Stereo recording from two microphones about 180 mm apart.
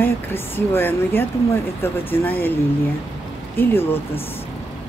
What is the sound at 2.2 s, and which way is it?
Speech, 10° left (ahead or behind).